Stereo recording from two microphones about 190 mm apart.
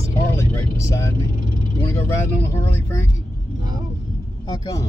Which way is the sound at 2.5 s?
10° left (ahead or behind).